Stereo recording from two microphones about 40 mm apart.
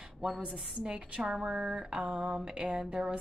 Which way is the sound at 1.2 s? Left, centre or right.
Centre.